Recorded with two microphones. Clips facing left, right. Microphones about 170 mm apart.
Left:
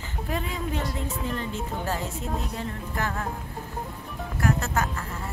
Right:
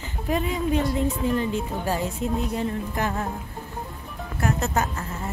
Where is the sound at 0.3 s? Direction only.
20° right (ahead or behind).